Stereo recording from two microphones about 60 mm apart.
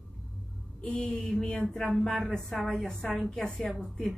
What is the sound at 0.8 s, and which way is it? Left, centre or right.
A woman's voice, centre.